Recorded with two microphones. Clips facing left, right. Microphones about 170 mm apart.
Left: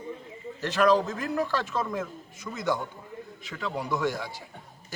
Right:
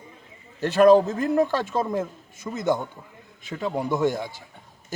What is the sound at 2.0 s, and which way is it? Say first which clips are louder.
Speech: right 5 dB; 25° right (ahead or behind).